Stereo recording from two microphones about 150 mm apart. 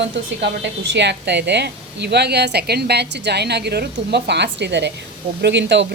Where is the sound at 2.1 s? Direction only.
90° right.